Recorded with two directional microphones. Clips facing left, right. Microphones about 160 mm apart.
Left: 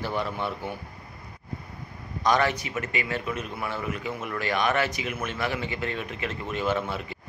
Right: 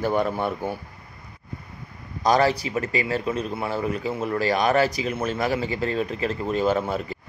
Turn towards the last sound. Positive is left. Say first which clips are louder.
# right 4 dB
turn(degrees=-40)  # may be behind; listen again after turning